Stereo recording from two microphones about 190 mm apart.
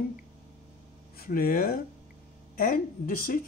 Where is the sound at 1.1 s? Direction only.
50° left (ahead or behind).